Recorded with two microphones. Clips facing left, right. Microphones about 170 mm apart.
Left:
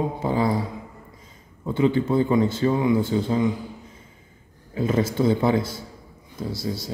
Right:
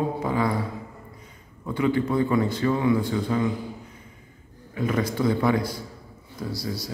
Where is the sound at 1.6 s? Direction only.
25° left (ahead or behind).